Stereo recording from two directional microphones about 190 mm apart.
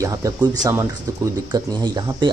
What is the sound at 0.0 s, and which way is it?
Speech, 15° right (ahead or behind).